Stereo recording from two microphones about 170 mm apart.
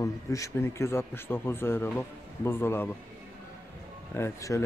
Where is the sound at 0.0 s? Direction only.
20° left (ahead or behind).